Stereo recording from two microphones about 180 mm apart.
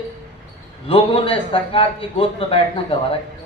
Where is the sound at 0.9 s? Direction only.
30° left (ahead or behind).